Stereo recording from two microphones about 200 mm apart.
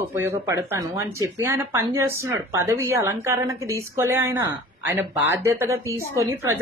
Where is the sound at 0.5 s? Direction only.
15° right (ahead or behind).